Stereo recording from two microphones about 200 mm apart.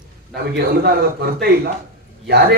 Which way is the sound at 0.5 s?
55° right (ahead or behind).